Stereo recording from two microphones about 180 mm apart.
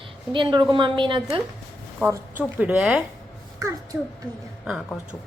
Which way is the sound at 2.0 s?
15° right (ahead or behind).